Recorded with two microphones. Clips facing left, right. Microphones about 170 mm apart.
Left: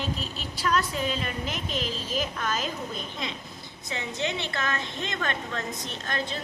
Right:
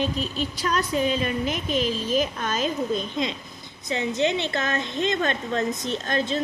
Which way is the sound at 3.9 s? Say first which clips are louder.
Right 8 dB; 20° right (ahead or behind).